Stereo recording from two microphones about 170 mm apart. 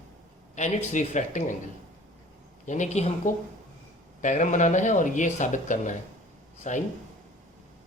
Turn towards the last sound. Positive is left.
turn(degrees=50)  # may be behind; listen again after turning